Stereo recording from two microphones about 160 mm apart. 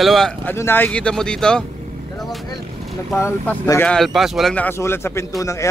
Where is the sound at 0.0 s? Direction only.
Centre (ahead or behind).